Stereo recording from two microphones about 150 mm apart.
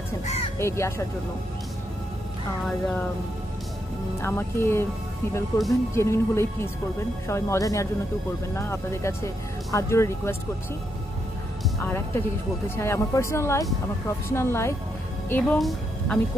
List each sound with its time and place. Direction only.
0.2 s crow: 45° left (ahead or behind)
0.6 s speech: 20° left (ahead or behind)
2.6 s speech: 10° left (ahead or behind)
4.2 s speech: 15° left (ahead or behind)
12.6 s speech: 15° left (ahead or behind)